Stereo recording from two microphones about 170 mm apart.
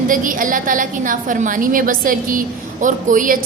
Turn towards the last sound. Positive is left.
turn(degrees=-50)  # may be behind; listen again after turning